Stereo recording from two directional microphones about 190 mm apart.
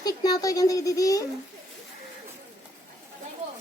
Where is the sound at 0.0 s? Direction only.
20° left (ahead or behind).